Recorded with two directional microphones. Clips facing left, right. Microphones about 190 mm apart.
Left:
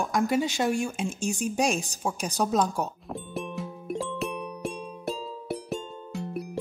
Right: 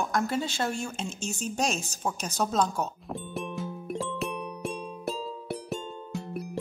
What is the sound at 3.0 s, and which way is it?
Music, centre (ahead or behind).